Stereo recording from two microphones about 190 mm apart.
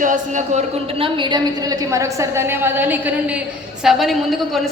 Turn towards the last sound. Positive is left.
turn(degrees=0)  # may be behind; listen again after turning